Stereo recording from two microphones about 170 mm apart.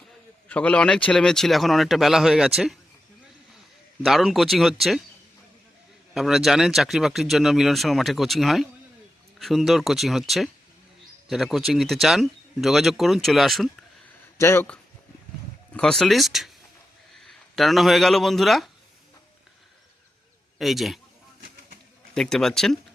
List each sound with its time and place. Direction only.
0.4 s speech: 10° left (ahead or behind)
4.0 s speech: centre (ahead or behind)
6.1 s speech: centre (ahead or behind)
14.3 s speech: 15° left (ahead or behind)
15.7 s speech: 5° left (ahead or behind)
20.6 s speech: centre (ahead or behind)
22.1 s speech: centre (ahead or behind)